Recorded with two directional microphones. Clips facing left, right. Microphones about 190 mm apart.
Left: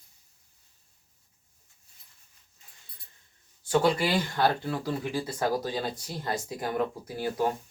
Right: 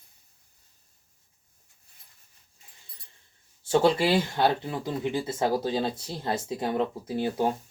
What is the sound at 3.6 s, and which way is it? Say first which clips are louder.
Speech: right 3 dB; 25° right (ahead or behind).